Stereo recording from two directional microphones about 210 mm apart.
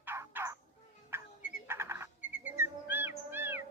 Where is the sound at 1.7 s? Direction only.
10° right (ahead or behind).